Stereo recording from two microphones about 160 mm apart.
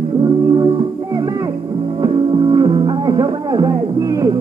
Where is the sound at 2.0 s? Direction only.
30° right (ahead or behind).